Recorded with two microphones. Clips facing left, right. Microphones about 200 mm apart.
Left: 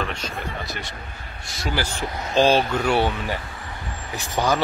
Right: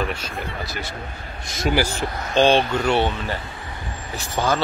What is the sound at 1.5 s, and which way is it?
Speech, 20° right (ahead or behind).